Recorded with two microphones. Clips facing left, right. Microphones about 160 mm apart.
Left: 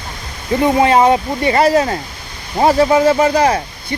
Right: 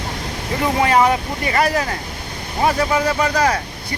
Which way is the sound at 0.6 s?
25° left (ahead or behind).